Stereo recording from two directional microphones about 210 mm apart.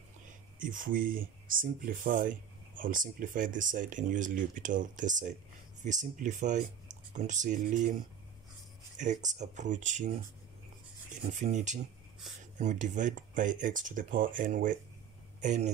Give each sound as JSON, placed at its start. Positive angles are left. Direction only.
{"t": 0.6, "sound": "speech", "side_deg": -40}
{"t": 8.9, "sound": "speech", "side_deg": -35}
{"t": 11.1, "sound": "rub", "side_deg": -35}
{"t": 12.5, "sound": "speech", "side_deg": -35}